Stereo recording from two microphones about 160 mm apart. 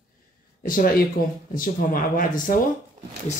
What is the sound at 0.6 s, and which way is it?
Speech, 65° left (ahead or behind).